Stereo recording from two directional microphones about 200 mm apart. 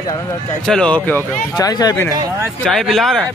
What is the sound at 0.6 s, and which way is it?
Speech, 5° left (ahead or behind).